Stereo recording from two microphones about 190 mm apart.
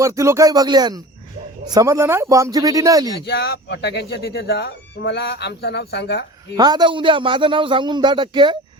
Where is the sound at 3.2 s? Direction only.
60° left (ahead or behind).